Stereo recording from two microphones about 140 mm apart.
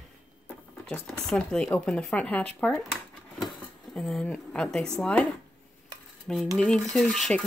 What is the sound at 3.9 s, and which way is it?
Speech, centre (ahead or behind).